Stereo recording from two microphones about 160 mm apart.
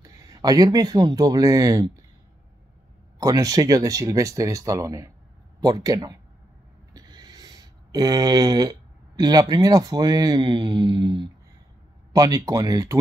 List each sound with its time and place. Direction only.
0.0 s speech: 20° right (ahead or behind)
3.2 s speech: 20° right (ahead or behind)